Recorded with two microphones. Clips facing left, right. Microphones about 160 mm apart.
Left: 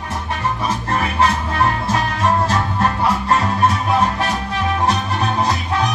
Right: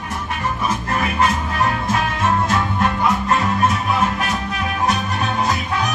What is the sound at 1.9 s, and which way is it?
Music, 35° left (ahead or behind).